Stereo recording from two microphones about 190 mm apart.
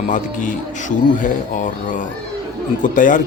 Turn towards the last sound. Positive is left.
turn(degrees=45)  # may be behind; listen again after turning